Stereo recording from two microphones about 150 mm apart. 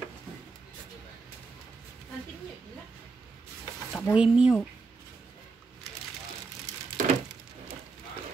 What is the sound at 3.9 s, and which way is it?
Speech, 5° right (ahead or behind).